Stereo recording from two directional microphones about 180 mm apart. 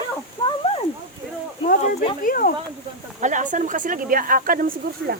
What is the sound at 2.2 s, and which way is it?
Speech, 50° left (ahead or behind).